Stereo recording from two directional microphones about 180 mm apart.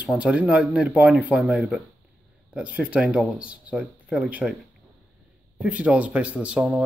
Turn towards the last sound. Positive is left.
turn(degrees=-5)  # may be behind; listen again after turning